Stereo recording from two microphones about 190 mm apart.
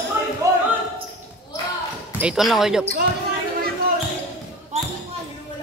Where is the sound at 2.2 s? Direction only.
Centre (ahead or behind).